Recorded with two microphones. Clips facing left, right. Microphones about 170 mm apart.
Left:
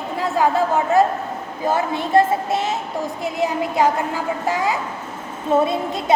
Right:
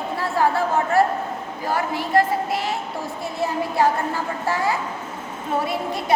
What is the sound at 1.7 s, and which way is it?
A woman's voice, 20° left (ahead or behind).